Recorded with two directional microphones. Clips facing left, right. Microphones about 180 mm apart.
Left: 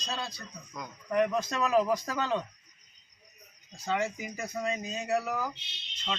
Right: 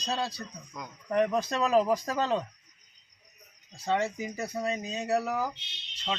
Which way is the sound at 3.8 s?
35° right (ahead or behind).